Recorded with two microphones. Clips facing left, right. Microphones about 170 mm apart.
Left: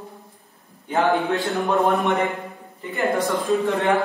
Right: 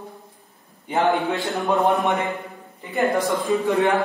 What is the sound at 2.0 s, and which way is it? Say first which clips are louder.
Speech: left 1 dB; 20° right (ahead or behind).